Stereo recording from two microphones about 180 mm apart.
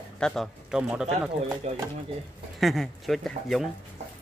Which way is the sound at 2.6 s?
Centre (ahead or behind).